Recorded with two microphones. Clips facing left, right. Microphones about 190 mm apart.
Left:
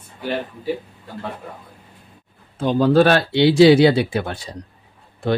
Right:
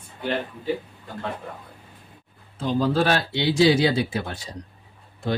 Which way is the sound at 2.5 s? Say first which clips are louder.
Left 7 dB; 60° left (ahead or behind).